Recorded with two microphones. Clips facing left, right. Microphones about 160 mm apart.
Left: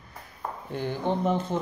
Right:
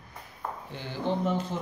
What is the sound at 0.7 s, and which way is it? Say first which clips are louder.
Speech: left 5 dB; 50° left (ahead or behind).